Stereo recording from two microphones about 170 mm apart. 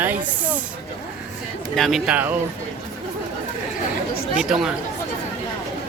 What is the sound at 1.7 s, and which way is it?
Speech, centre (ahead or behind).